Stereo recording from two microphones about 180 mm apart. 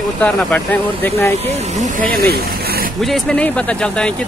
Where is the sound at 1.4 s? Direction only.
35° right (ahead or behind).